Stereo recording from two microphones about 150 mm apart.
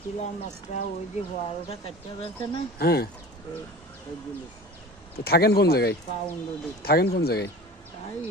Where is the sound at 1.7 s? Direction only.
40° left (ahead or behind).